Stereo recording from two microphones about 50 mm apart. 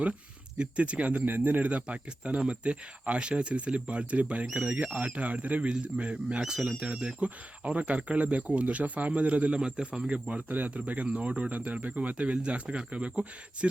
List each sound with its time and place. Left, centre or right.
0.6 s speech: right
6.4 s speech: centre
7.2 s speech: right